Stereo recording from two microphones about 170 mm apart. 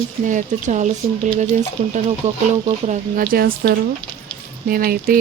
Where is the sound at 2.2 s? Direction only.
40° right (ahead or behind).